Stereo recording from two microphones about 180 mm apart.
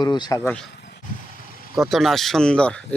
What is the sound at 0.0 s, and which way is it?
Speech, 25° left (ahead or behind).